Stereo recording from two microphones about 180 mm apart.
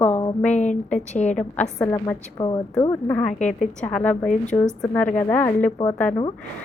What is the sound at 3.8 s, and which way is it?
A woman's voice, 5° left (ahead or behind).